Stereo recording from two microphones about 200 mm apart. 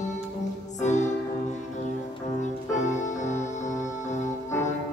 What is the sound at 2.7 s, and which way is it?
Music, 35° left (ahead or behind).